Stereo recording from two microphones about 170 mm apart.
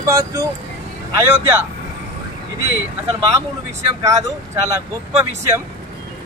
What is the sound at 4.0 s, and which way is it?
Speech, 20° right (ahead or behind).